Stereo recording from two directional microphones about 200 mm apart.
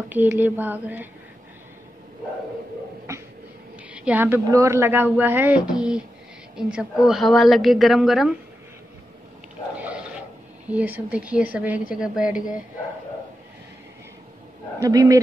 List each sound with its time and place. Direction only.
0.1 s speech: 10° right (ahead or behind)
3.1 s a sound: 15° right (ahead or behind)
3.9 s a woman's voice: 5° right (ahead or behind)
9.8 s a sound: 5° right (ahead or behind)
10.7 s speech: 5° right (ahead or behind)
14.8 s speech: 15° right (ahead or behind)